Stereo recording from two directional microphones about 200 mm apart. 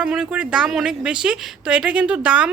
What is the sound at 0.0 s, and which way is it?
Speech, 5° right (ahead or behind).